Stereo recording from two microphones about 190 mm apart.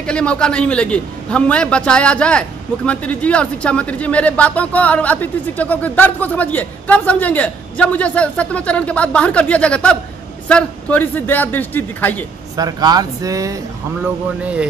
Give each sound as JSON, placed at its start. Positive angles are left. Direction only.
{"t": 0.0, "sound": "a man's voice", "side_deg": 5}
{"t": 12.5, "sound": "speech", "side_deg": -20}
{"t": 14.0, "sound": "speech", "side_deg": -5}